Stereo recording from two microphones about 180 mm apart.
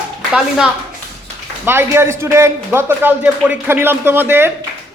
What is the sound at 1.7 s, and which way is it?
Speech, 10° right (ahead or behind).